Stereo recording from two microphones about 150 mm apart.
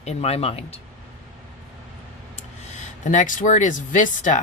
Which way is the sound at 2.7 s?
55° left (ahead or behind).